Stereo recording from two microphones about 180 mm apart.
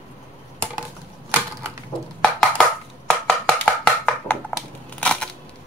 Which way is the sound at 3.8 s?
5° left (ahead or behind).